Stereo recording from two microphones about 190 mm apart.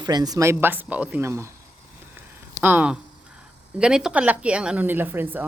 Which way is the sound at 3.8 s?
5° right (ahead or behind).